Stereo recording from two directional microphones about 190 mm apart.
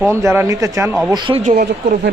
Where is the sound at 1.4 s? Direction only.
40° right (ahead or behind).